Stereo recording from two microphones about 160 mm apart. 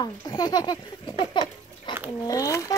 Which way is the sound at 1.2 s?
30° left (ahead or behind).